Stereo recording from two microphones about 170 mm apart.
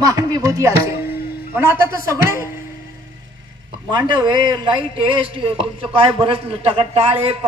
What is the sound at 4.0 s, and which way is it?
A man's voice, 25° right (ahead or behind).